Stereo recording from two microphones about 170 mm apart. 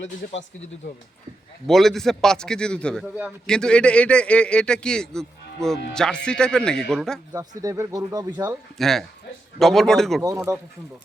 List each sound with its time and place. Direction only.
1.6 s speech: centre (ahead or behind)
7.3 s speech: 20° right (ahead or behind)
8.8 s speech: centre (ahead or behind)
10.2 s speech: 20° right (ahead or behind)